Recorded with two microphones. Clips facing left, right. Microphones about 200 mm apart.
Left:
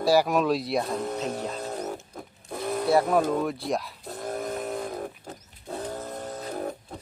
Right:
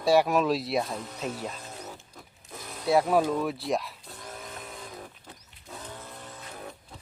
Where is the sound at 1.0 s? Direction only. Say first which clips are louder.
Left 6 dB; 55° left (ahead or behind).